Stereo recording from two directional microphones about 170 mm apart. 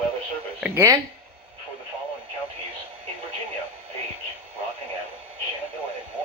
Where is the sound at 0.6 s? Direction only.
10° right (ahead or behind).